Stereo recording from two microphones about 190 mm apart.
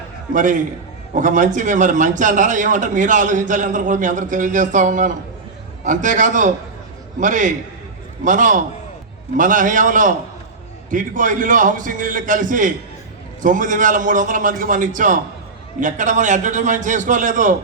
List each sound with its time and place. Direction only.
1.1 s a man's voice: 45° right (ahead or behind)